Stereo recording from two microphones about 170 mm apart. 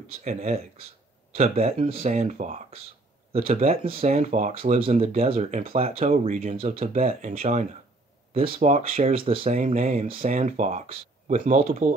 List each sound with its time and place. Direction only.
0.2 s speech: 40° right (ahead or behind)
5.8 s speech: 40° right (ahead or behind)
6.5 s speech: 35° right (ahead or behind)